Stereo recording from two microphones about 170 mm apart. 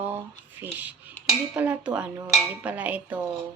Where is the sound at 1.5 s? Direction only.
10° right (ahead or behind).